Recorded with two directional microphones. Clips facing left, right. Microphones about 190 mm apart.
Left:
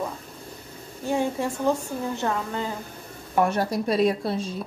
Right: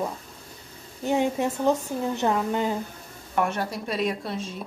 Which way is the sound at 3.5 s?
35° left (ahead or behind).